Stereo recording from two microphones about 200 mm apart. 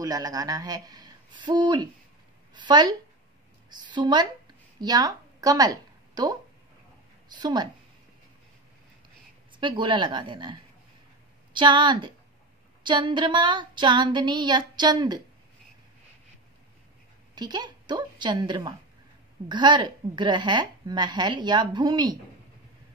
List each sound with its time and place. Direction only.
0.0 s a woman's voice: 20° right (ahead or behind)
7.3 s a woman's voice: 20° right (ahead or behind)
9.6 s a woman's voice: 25° right (ahead or behind)
17.4 s a woman's voice: 20° right (ahead or behind)